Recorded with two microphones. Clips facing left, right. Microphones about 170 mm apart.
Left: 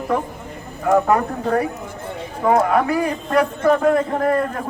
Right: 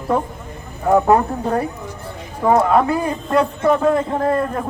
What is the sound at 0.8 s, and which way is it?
A woman's voice, 30° right (ahead or behind).